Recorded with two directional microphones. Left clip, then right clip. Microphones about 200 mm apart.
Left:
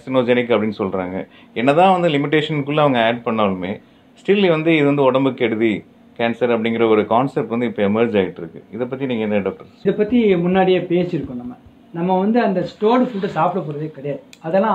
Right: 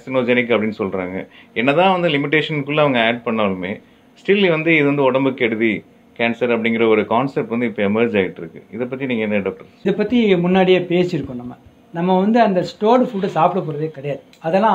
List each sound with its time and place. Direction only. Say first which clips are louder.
0.0 s speech: left 1 dB; 10° left (ahead or behind)
9.8 s speech: even; 50° right (ahead or behind)